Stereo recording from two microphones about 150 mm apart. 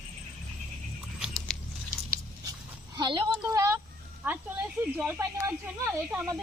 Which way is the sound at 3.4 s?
20° right (ahead or behind).